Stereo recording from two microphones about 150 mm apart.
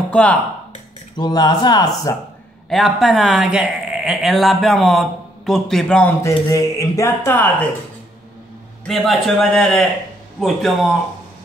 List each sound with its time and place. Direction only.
0.1 s speech: 10° left (ahead or behind)
1.1 s speech: 25° left (ahead or behind)
2.7 s speech: centre (ahead or behind)
6.2 s speech: 20° left (ahead or behind)
8.8 s speech: centre (ahead or behind)